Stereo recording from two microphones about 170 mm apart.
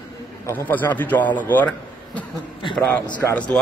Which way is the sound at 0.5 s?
10° left (ahead or behind).